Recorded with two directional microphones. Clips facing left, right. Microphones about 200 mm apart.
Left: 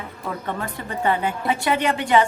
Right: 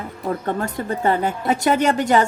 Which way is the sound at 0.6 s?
40° right (ahead or behind).